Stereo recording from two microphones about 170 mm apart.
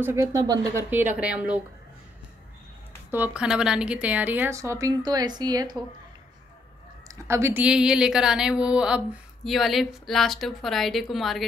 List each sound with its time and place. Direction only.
0.0 s speech: 20° right (ahead or behind)
1.2 s a woman's voice: 5° right (ahead or behind)
3.1 s a woman's voice: 10° right (ahead or behind)
7.1 s speech: 15° right (ahead or behind); by 11.4 s centre (ahead or behind)